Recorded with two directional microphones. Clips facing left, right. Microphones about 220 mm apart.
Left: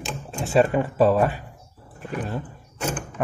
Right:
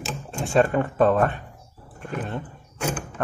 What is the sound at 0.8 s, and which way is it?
Speech, 5° left (ahead or behind).